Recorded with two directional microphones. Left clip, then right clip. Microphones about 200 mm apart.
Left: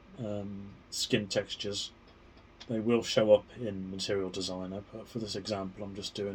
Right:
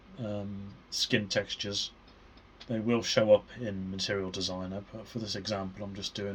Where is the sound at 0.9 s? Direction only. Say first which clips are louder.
Right 2 dB; 35° right (ahead or behind).